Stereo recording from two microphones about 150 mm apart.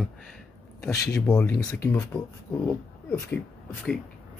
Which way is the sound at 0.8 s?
20° left (ahead or behind).